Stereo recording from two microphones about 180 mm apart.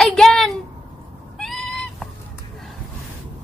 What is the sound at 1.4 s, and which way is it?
Goat, centre (ahead or behind).